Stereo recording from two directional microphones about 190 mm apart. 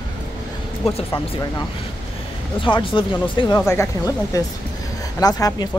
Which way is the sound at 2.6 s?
25° left (ahead or behind).